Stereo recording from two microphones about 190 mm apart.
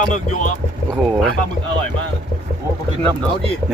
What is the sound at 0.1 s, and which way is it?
Speech, 40° left (ahead or behind).